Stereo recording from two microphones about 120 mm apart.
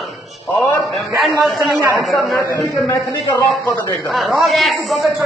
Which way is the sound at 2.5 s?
25° left (ahead or behind).